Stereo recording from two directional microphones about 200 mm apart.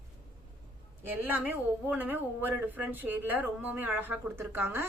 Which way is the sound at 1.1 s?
10° right (ahead or behind).